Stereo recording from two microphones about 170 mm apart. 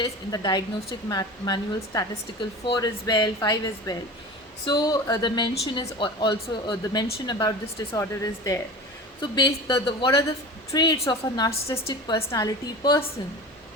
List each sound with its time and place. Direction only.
0.0 s a woman's voice: 20° left (ahead or behind)